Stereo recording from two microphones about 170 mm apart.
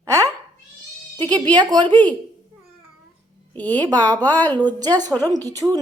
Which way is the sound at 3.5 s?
10° left (ahead or behind).